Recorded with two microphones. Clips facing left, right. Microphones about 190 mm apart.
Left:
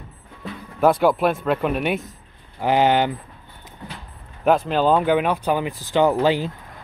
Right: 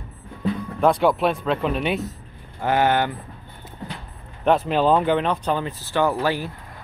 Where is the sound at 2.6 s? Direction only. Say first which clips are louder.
Left 2 dB; 15° left (ahead or behind).